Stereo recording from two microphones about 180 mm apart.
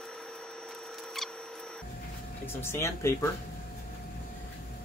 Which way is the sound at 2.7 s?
15° left (ahead or behind).